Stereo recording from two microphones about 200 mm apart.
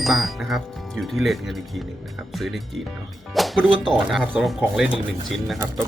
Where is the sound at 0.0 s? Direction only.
Centre (ahead or behind).